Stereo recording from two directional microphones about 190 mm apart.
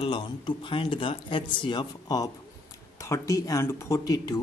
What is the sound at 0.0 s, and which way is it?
Speech, 25° left (ahead or behind).